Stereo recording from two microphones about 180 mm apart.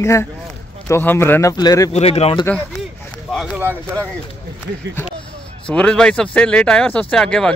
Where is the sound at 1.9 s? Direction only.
35° left (ahead or behind).